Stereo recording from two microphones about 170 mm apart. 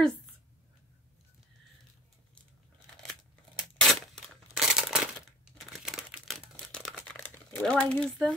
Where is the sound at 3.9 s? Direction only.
Centre (ahead or behind).